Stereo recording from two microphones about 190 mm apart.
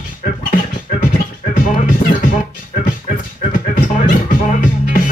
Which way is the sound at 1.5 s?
45° left (ahead or behind).